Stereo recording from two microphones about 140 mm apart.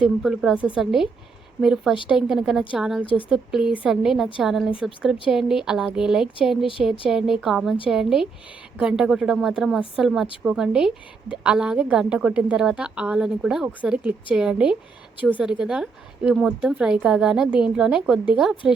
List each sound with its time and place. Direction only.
0.0 s a woman's voice: centre (ahead or behind)